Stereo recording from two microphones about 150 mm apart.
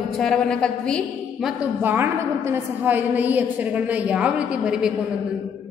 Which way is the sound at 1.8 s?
15° right (ahead or behind).